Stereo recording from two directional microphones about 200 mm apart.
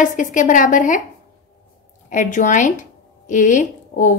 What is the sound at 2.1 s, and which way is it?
A woman's voice, 40° left (ahead or behind).